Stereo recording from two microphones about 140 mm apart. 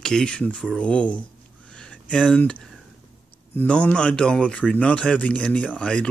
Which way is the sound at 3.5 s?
10° left (ahead or behind).